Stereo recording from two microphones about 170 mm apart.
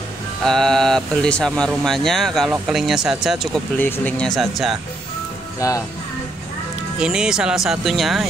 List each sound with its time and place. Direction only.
0.4 s speech: centre (ahead or behind)
3.7 s speech: 10° left (ahead or behind)
5.6 s speech: 20° left (ahead or behind)
7.0 s speech: 5° right (ahead or behind)